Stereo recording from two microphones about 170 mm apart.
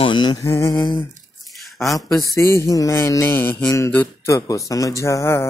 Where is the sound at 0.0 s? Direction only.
25° left (ahead or behind).